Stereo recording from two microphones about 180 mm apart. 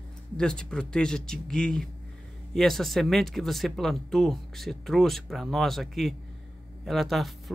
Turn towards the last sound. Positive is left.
turn(degrees=0)  # may be behind; listen again after turning